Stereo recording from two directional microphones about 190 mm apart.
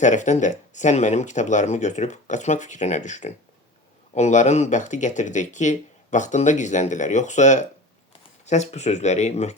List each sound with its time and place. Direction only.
0.0 s speech: 40° left (ahead or behind)